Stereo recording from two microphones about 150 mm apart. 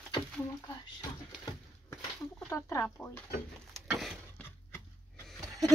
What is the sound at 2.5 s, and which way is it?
Speech, 20° left (ahead or behind).